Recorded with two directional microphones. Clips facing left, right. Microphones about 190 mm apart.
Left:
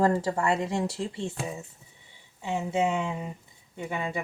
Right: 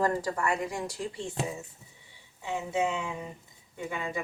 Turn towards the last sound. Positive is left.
turn(degrees=25)  # may be behind; listen again after turning